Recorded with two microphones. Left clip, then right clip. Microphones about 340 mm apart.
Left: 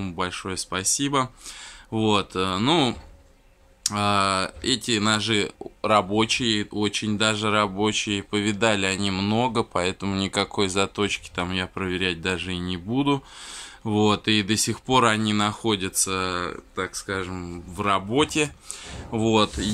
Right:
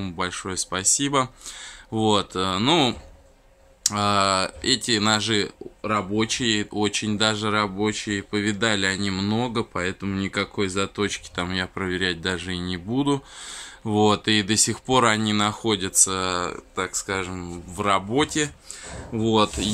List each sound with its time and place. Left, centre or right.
0.0 s speech: centre